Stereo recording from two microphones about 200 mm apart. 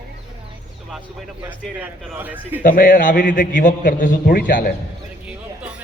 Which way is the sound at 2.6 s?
40° left (ahead or behind).